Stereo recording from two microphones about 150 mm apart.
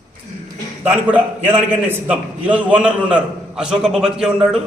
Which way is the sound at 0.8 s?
10° right (ahead or behind).